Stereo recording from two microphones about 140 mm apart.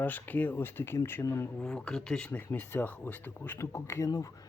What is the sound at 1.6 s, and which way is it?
Speech, 5° left (ahead or behind).